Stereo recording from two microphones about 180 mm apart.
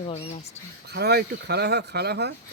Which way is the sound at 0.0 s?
35° left (ahead or behind).